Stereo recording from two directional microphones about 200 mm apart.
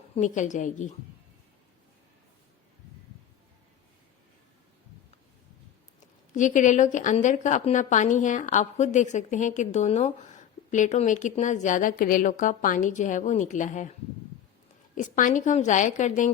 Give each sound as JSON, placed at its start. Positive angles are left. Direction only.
{"t": 0.2, "sound": "a woman's voice", "side_deg": 40}
{"t": 6.3, "sound": "a woman's voice", "side_deg": 40}
{"t": 14.9, "sound": "a woman's voice", "side_deg": 40}